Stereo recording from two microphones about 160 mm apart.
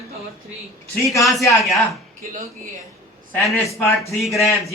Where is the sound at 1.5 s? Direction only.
Centre (ahead or behind).